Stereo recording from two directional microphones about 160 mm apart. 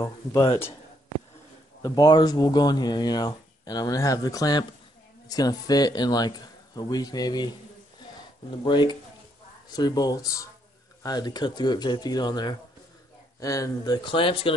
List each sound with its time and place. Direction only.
0.0 s speech: 20° left (ahead or behind)
1.8 s speech: 25° left (ahead or behind)